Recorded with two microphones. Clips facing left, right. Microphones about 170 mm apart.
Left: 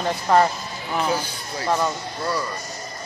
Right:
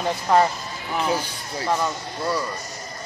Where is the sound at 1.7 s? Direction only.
Centre (ahead or behind).